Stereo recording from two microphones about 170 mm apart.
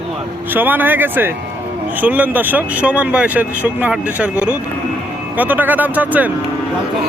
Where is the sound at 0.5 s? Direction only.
10° right (ahead or behind).